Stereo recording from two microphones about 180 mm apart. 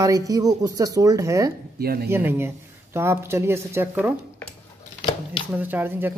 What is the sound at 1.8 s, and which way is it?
Speech, 60° right (ahead or behind).